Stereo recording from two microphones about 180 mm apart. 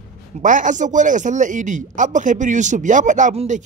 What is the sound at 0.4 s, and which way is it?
A man's voice, 45° right (ahead or behind).